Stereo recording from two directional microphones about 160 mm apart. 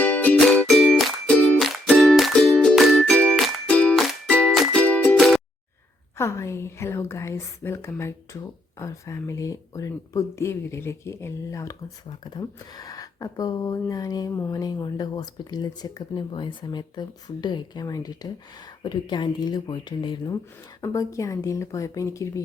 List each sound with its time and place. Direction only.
0.0 s music: 10° left (ahead or behind)
6.1 s speech: 15° left (ahead or behind)